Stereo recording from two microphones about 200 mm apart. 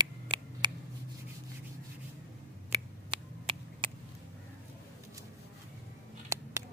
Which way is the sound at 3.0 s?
25° right (ahead or behind).